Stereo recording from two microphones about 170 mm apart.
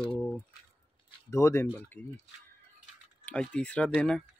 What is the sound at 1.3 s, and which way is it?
Speech, 15° left (ahead or behind).